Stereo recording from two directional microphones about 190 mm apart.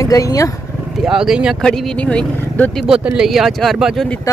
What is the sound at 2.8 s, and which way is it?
Speech, 5° right (ahead or behind).